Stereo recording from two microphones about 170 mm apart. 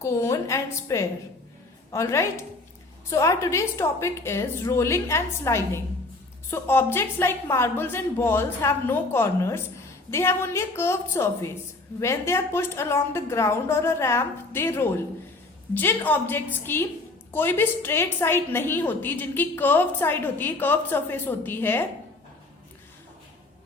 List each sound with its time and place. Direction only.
0.0 s a woman's voice: 15° left (ahead or behind)